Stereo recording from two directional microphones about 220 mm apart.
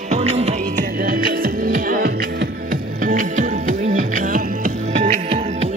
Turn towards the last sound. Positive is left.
turn(degrees=-30)  # may be behind; listen again after turning